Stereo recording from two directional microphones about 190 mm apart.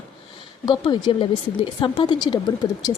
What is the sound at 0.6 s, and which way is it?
A woman's voice, 25° left (ahead or behind).